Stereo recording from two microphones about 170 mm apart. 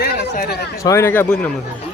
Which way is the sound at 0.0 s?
65° left (ahead or behind).